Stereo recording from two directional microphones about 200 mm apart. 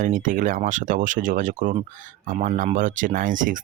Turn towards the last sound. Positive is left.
turn(degrees=-40)  # may be behind; listen again after turning